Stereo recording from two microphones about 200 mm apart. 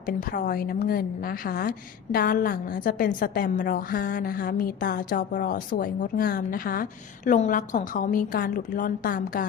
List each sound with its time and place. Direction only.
0.0 s a woman's voice: 45° left (ahead or behind)